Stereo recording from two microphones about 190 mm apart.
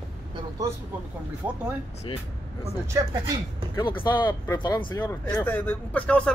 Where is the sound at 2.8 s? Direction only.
15° right (ahead or behind).